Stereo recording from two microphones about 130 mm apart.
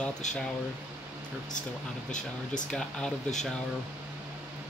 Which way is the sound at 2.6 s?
5° left (ahead or behind).